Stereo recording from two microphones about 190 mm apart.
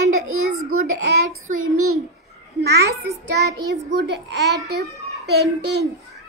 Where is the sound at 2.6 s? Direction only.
60° right (ahead or behind).